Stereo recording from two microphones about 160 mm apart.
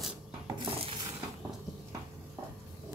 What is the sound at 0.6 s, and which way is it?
Stir, 35° right (ahead or behind).